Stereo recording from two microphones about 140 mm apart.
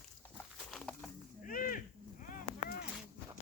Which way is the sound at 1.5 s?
80° left.